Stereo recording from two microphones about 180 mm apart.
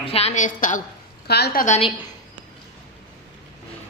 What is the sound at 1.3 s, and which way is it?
Speech, 65° left (ahead or behind).